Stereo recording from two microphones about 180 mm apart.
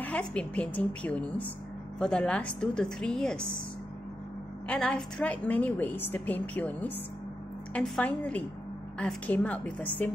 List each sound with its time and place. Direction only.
0.0 s a woman's voice: 5° left (ahead or behind)
4.6 s a woman's voice: 5° left (ahead or behind)